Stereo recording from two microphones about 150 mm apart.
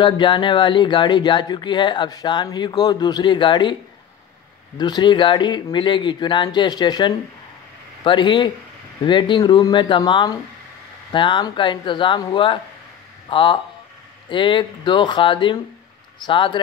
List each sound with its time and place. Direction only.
0.0 s speech: 30° left (ahead or behind)
4.7 s speech: 30° left (ahead or behind)